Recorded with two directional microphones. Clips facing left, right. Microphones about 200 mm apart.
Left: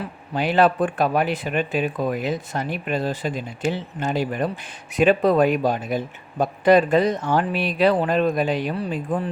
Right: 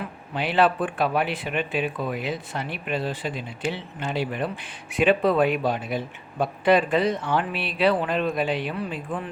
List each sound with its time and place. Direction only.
0.3 s speech: 45° left (ahead or behind)